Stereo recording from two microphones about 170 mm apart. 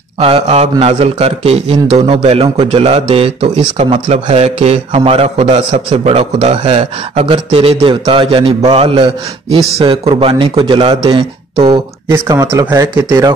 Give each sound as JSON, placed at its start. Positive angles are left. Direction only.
{"t": 0.2, "sound": "a man's voice", "side_deg": -35}
{"t": 12.1, "sound": "speech", "side_deg": -15}